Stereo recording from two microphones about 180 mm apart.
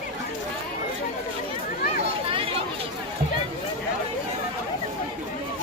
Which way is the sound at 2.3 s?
30° right (ahead or behind).